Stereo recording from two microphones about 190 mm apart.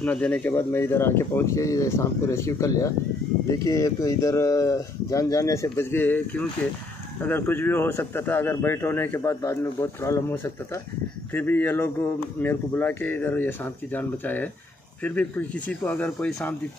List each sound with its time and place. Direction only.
0.0 s speech: 5° left (ahead or behind)